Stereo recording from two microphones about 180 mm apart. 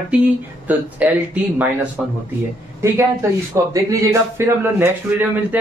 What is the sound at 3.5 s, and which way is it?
A man's voice, 20° right (ahead or behind).